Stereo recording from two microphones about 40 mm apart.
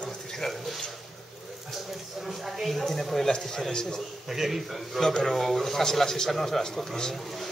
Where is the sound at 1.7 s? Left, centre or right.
Centre.